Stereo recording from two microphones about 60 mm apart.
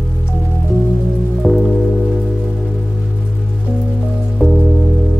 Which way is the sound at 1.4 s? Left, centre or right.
Centre.